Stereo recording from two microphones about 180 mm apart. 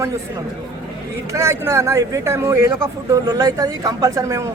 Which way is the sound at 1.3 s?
15° right (ahead or behind).